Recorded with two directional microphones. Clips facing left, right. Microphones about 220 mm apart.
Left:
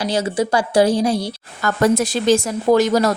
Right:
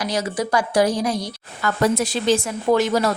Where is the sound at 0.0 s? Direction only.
30° left (ahead or behind).